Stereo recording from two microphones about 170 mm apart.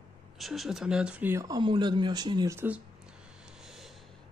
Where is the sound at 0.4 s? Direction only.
Centre (ahead or behind).